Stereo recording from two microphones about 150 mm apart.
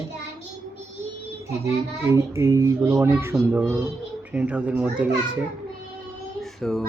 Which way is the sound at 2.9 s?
15° right (ahead or behind).